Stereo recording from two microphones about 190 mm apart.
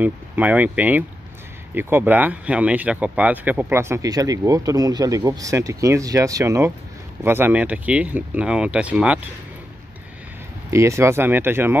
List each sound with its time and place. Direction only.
0.0 s speech: 10° right (ahead or behind)
10.7 s speech: 15° right (ahead or behind)